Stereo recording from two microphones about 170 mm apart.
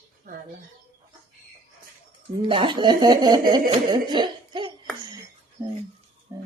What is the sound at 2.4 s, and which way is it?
A woman's voice, 30° right (ahead or behind).